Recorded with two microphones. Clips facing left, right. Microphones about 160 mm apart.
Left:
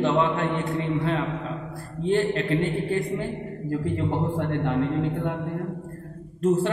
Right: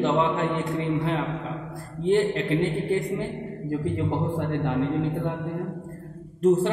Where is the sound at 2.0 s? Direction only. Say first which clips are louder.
Right 1 dB; 15° right (ahead or behind).